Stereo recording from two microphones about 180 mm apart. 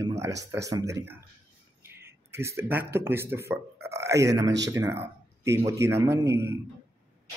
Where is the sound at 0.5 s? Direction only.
20° right (ahead or behind).